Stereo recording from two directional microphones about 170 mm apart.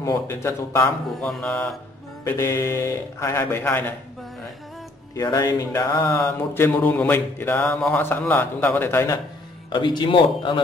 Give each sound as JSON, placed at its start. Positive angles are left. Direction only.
{"t": 0.0, "sound": "speech", "side_deg": 15}
{"t": 5.1, "sound": "speech", "side_deg": 20}
{"t": 9.7, "sound": "speech", "side_deg": 25}